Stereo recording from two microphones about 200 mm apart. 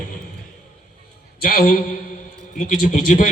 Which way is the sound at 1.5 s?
45° left (ahead or behind).